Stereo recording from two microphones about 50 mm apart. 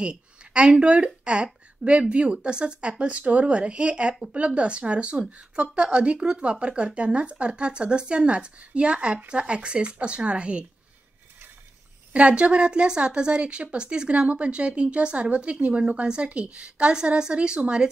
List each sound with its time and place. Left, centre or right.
0.0 s a sound: right
0.7 s speech: right
12.1 s speech: right